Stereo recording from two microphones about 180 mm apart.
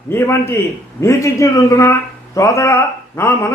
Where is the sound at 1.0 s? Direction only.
15° left (ahead or behind).